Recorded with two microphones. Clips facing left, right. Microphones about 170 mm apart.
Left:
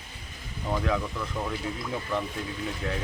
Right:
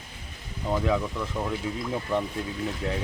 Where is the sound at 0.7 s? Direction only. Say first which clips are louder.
Right 3 dB; 10° right (ahead or behind).